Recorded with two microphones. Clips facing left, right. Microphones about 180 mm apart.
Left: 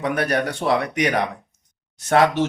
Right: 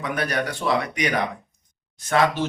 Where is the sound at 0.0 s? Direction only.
60° left (ahead or behind).